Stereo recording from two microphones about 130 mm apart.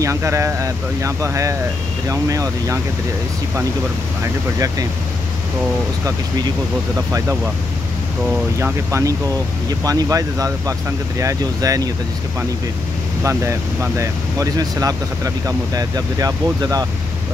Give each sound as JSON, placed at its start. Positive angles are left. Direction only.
{"t": 0.0, "sound": "speech", "side_deg": -20}
{"t": 4.2, "sound": "speech", "side_deg": -25}
{"t": 7.1, "sound": "speech", "side_deg": -25}
{"t": 9.7, "sound": "speech", "side_deg": -30}
{"t": 13.2, "sound": "speech", "side_deg": -20}